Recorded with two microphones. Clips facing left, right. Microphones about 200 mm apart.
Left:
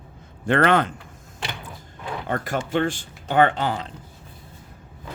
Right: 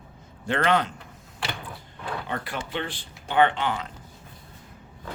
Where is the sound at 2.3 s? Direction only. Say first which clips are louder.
Left 11 dB; 45° left (ahead or behind).